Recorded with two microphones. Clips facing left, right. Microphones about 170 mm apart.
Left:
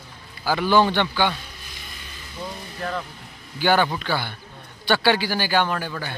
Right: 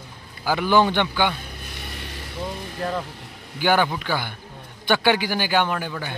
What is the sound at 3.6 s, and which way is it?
Speech, 10° right (ahead or behind).